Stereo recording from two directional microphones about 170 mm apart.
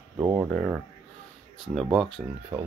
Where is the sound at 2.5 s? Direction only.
20° right (ahead or behind).